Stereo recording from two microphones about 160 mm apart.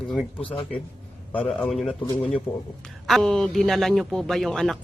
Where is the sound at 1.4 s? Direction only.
Centre (ahead or behind).